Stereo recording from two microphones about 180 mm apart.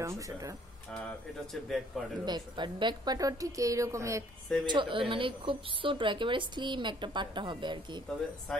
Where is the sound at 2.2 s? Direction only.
25° right (ahead or behind).